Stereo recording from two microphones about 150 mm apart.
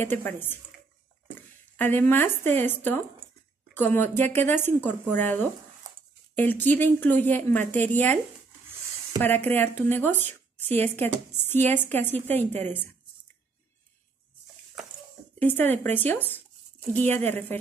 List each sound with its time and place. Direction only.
0.0 s a woman's voice: 15° left (ahead or behind)
1.8 s a woman's voice: 15° left (ahead or behind)
9.2 s a woman's voice: 15° left (ahead or behind)
14.8 s bathtub: centre (ahead or behind)
15.3 s a woman's voice: 15° left (ahead or behind)